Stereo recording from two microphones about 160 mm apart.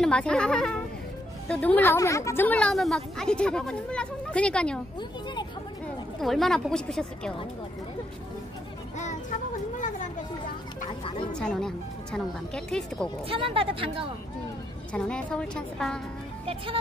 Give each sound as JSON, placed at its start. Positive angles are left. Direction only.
{"t": 0.0, "sound": "a woman's voice", "side_deg": 5}
{"t": 6.2, "sound": "speech", "side_deg": 0}
{"t": 9.8, "sound": "speech", "side_deg": 50}
{"t": 11.3, "sound": "speech", "side_deg": 5}
{"t": 13.3, "sound": "speech", "side_deg": -35}
{"t": 14.9, "sound": "speech", "side_deg": 5}